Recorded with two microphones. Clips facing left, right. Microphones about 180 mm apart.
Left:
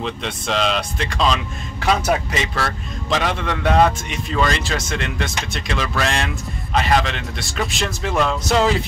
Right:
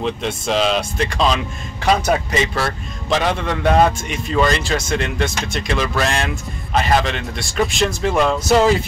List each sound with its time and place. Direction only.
0.0 s a man's voice: centre (ahead or behind)
2.5 s a man's voice: 5° right (ahead or behind)